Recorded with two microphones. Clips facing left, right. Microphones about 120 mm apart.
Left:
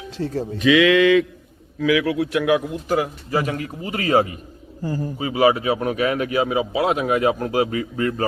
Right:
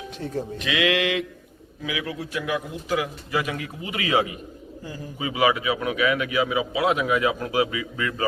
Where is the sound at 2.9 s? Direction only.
35° left (ahead or behind).